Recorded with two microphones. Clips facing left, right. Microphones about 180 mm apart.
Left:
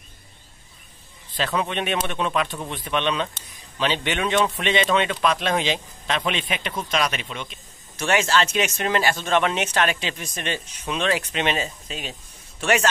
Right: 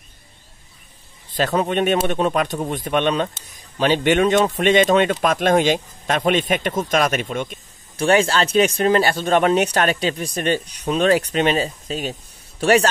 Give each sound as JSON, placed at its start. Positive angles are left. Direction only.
{"t": 1.3, "sound": "speech", "side_deg": -45}
{"t": 8.0, "sound": "speech", "side_deg": -35}